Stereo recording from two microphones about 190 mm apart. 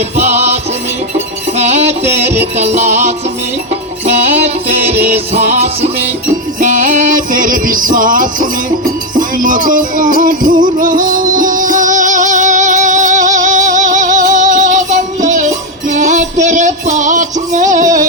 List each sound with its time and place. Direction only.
0.2 s music: 35° right (ahead or behind)
5.0 s music: 40° right (ahead or behind)